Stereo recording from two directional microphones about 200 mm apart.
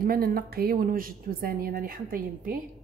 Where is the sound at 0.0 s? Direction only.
45° right (ahead or behind).